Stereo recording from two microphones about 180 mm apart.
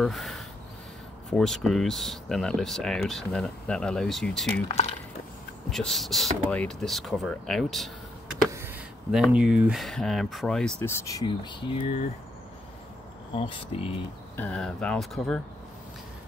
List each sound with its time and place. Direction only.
0.0 s speech: centre (ahead or behind)
5.7 s speech: centre (ahead or behind)
9.1 s speech: 5° right (ahead or behind)
11.1 s speech: 20° left (ahead or behind)
13.4 s speech: 30° left (ahead or behind)
14.3 s speech: 10° left (ahead or behind)